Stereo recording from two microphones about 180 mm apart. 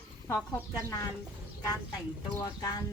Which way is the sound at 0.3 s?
15° left (ahead or behind).